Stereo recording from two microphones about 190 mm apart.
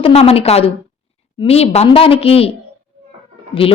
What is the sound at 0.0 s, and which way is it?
A woman's voice, 30° left (ahead or behind).